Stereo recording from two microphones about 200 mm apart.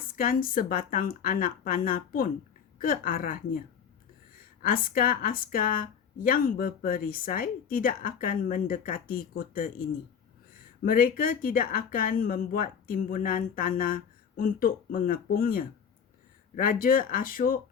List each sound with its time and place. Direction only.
0.0 s a woman's voice: 45° left (ahead or behind)
4.6 s a woman's voice: 45° left (ahead or behind)
10.8 s a woman's voice: 45° left (ahead or behind)